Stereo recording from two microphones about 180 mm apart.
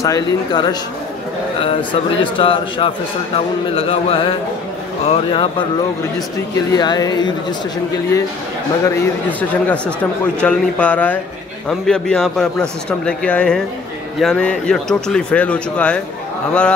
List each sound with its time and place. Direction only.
0.0 s a man's voice: 20° left (ahead or behind)
6.7 s a man's voice: 20° left (ahead or behind)
8.8 s a man's voice: 10° left (ahead or behind)